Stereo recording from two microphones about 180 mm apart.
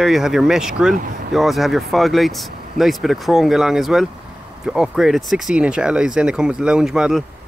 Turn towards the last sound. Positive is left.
turn(degrees=-5)  # may be behind; listen again after turning